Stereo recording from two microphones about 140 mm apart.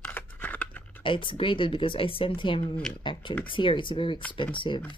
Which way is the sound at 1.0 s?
35° left (ahead or behind).